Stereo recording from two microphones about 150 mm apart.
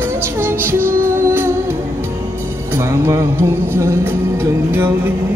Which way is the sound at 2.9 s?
20° right (ahead or behind).